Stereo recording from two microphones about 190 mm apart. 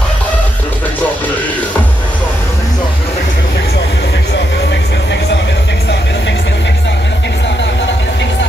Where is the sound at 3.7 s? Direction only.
65° left (ahead or behind).